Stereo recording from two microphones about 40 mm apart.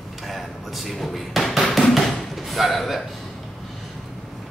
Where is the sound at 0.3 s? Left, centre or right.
Centre.